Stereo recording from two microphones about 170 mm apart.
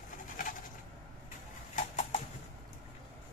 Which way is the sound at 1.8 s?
45° left (ahead or behind).